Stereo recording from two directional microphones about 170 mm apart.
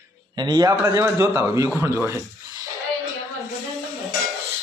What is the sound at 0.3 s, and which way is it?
A man's voice, 25° right (ahead or behind).